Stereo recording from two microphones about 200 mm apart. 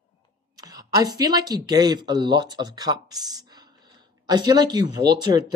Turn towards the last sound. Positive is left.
turn(degrees=-20)  # may be behind; listen again after turning